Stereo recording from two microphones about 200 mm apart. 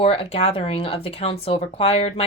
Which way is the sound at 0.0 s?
30° left (ahead or behind).